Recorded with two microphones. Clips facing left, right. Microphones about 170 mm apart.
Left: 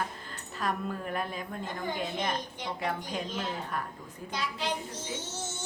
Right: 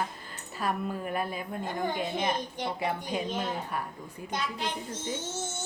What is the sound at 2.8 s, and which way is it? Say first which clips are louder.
Speech: right 1 dB; 5° right (ahead or behind).